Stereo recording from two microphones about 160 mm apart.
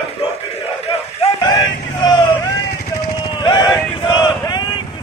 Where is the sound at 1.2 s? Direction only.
25° left (ahead or behind).